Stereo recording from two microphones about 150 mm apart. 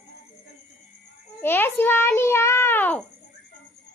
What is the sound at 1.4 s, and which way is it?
Child singing, 15° left (ahead or behind).